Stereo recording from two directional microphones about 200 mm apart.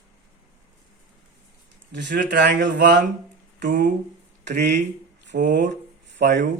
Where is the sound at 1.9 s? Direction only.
60° right (ahead or behind).